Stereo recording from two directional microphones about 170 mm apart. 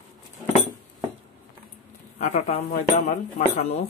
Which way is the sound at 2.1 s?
40° left (ahead or behind).